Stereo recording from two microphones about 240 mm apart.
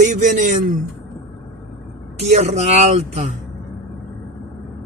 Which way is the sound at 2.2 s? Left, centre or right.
Right.